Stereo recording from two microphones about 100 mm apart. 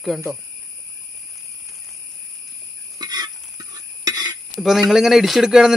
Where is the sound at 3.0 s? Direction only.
40° right (ahead or behind).